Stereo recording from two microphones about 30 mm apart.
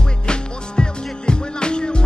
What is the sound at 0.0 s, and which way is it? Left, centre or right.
Music, left.